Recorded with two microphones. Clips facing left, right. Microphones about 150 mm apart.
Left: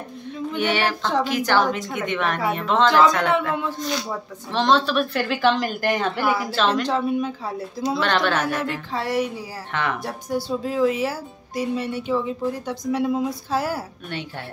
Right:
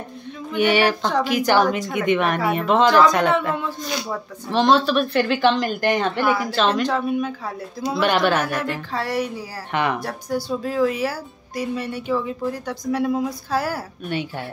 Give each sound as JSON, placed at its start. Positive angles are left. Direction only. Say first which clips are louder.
{"t": 0.5, "sound": "speech", "louder": "right 5 dB", "side_deg": -10}
{"t": 4.5, "sound": "a woman's voice", "louder": "right 3 dB", "side_deg": -10}
{"t": 6.9, "sound": "speech", "louder": "even", "side_deg": 25}
{"t": 7.8, "sound": "speech", "louder": "right 2 dB", "side_deg": -10}
{"t": 8.5, "sound": "speech", "louder": "even", "side_deg": 25}
{"t": 9.7, "sound": "speech", "louder": "right 4 dB", "side_deg": -15}
{"t": 10.0, "sound": "speech", "louder": "right 1 dB", "side_deg": 20}